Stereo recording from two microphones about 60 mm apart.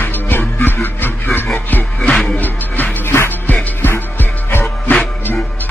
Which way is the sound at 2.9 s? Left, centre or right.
Left.